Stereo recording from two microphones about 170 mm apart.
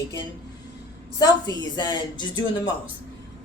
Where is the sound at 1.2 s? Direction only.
25° left (ahead or behind).